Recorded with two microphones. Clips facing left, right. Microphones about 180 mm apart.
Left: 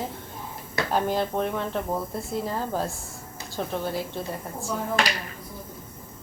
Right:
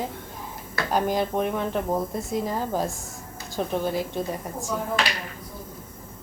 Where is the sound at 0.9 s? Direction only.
10° right (ahead or behind).